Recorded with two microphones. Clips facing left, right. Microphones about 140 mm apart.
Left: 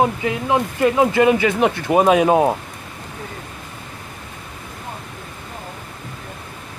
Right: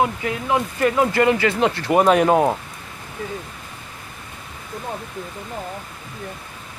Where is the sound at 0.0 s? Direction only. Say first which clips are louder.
Left 3 dB; 20° left (ahead or behind).